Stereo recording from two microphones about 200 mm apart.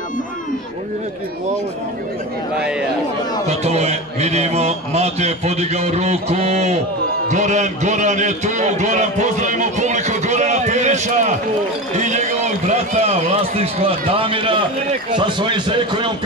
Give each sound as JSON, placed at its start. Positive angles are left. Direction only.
{"t": 3.4, "sound": "a man's voice", "side_deg": -30}